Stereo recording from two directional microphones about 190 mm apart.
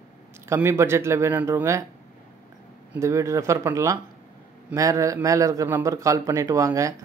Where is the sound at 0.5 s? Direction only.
15° right (ahead or behind).